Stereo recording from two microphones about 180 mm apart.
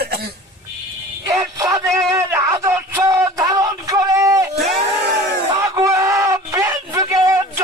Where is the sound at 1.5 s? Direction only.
20° right (ahead or behind).